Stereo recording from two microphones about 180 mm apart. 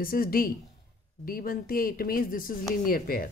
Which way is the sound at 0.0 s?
55° left (ahead or behind).